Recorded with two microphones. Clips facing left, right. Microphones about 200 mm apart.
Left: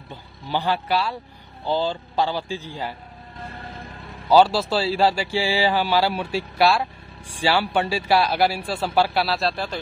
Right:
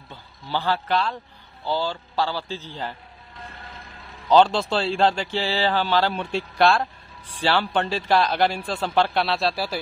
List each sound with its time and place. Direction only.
0.1 s speech: 15° left (ahead or behind)
4.3 s speech: 10° left (ahead or behind)